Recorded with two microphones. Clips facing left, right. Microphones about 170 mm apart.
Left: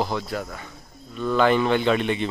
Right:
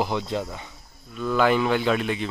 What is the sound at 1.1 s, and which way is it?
Speech, 5° right (ahead or behind).